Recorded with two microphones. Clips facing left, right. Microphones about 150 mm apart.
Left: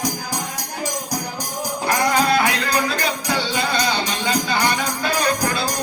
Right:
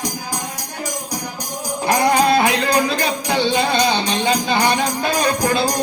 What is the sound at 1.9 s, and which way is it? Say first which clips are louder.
Music: right 4 dB; 25° right (ahead or behind).